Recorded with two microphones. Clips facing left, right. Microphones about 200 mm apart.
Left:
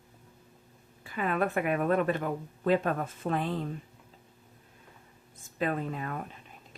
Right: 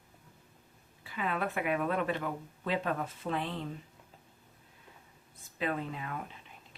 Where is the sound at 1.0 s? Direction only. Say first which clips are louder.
Left 5 dB; 50° left (ahead or behind).